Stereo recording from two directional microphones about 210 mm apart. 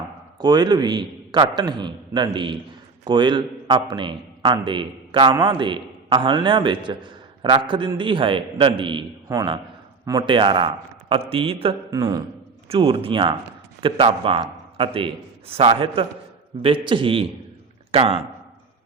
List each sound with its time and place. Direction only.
0.3 s a man's voice: 20° right (ahead or behind)
12.6 s a man's voice: 25° right (ahead or behind)